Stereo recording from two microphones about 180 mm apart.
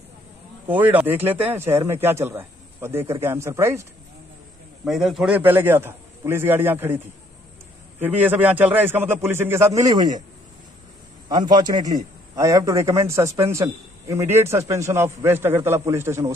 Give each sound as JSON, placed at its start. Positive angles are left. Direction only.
{"t": 0.7, "sound": "a man's voice", "side_deg": -10}
{"t": 4.8, "sound": "a man's voice", "side_deg": 0}
{"t": 8.0, "sound": "a man's voice", "side_deg": -10}
{"t": 11.2, "sound": "a man's voice", "side_deg": -20}